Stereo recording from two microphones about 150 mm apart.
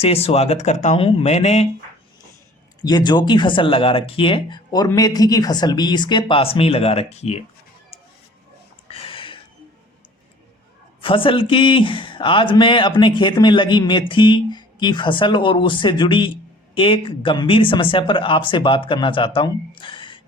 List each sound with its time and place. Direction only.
0.0 s speech: 40° left (ahead or behind)
2.8 s speech: 30° left (ahead or behind); by 7.4 s 45° left (ahead or behind)
8.9 s a sound: 40° left (ahead or behind)
11.0 s speech: 35° left (ahead or behind)